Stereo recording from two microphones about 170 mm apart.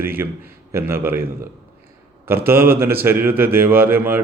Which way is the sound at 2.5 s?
15° right (ahead or behind).